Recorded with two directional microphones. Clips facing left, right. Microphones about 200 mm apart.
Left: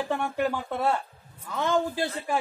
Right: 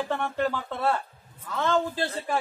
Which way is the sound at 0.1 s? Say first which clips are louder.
Left 2 dB; 10° left (ahead or behind).